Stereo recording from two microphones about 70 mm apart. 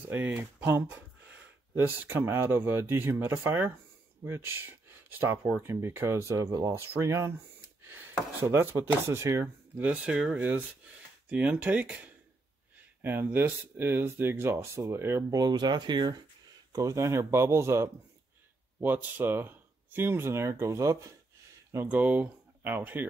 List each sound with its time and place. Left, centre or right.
0.1 s speech: right
5.6 s speech: right
6.8 s speech: right
8.4 s speech: right
9.8 s speech: centre; by 15.2 s right
15.3 s speech: right
16.7 s speech: right
18.8 s speech: right
21.8 s speech: right